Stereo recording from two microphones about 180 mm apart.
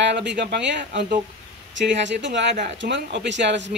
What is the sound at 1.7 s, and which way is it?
Speech, 85° right.